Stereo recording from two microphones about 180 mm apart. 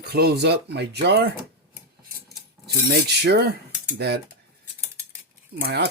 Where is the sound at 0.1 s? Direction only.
60° right (ahead or behind).